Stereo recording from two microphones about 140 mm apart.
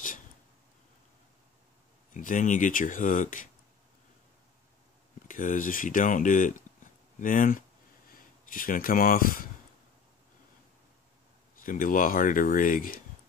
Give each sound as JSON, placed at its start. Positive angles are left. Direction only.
{"t": 2.1, "sound": "speech", "side_deg": 65}
{"t": 5.3, "sound": "speech", "side_deg": 70}
{"t": 11.6, "sound": "speech", "side_deg": 75}